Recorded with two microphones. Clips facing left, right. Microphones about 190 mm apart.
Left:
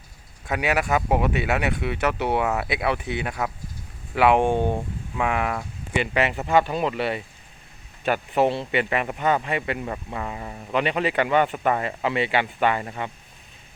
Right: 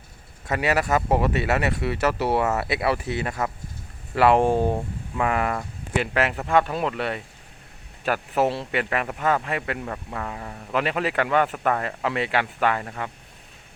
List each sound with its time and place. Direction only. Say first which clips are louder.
0.4 s a man's voice: right 1 dB; centre (ahead or behind)